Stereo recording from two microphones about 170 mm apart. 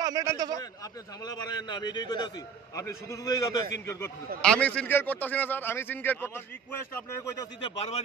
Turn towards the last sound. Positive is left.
turn(degrees=35)  # may be behind; listen again after turning